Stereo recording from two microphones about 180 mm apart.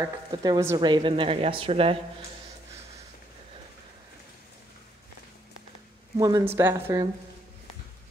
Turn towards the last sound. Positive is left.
turn(degrees=-20)  # may be behind; listen again after turning